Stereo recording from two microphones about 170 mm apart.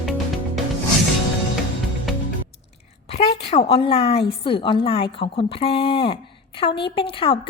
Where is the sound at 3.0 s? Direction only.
35° left (ahead or behind).